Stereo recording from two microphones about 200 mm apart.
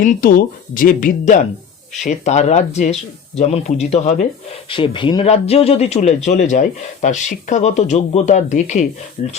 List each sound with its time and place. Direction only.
0.0 s a man's voice: 40° left (ahead or behind)